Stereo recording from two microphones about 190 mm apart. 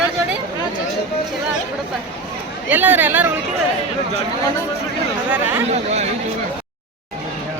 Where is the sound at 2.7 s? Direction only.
10° right (ahead or behind).